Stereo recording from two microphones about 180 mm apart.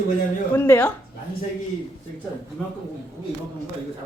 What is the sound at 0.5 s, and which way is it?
Speech, 10° left (ahead or behind).